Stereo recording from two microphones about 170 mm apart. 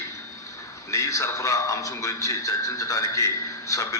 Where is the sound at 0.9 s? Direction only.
20° left (ahead or behind).